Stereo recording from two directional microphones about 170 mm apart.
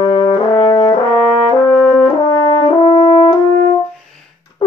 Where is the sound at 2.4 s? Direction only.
30° left (ahead or behind).